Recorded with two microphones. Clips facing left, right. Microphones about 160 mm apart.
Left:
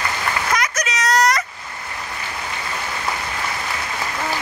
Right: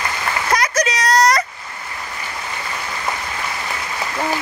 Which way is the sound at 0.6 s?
35° right (ahead or behind).